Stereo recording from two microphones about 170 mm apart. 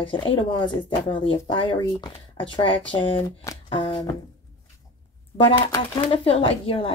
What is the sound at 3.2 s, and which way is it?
Speech, 20° left (ahead or behind).